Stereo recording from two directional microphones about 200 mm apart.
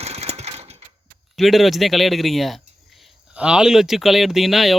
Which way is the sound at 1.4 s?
Centre (ahead or behind).